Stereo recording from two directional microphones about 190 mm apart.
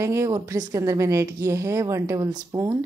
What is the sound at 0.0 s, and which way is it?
Speech, 15° right (ahead or behind).